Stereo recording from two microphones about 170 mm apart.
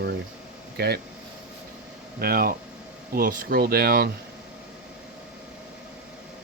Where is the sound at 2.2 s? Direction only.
60° right (ahead or behind).